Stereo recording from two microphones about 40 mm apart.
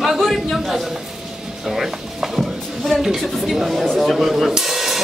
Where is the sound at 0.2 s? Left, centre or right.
Centre.